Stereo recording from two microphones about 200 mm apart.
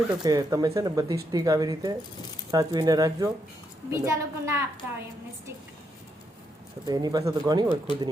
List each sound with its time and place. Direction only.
0.2 s a woman's voice: 20° right (ahead or behind)
6.8 s speech: 20° right (ahead or behind)